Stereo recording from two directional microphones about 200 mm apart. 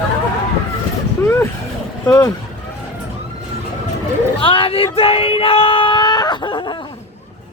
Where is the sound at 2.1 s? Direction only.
20° left (ahead or behind).